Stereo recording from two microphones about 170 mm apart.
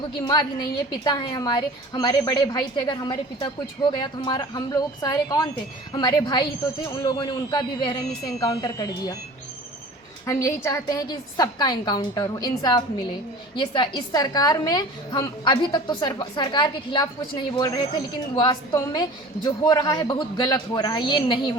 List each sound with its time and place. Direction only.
1.0 s a woman's voice: 25° left (ahead or behind)
10.2 s a woman's voice: 20° left (ahead or behind)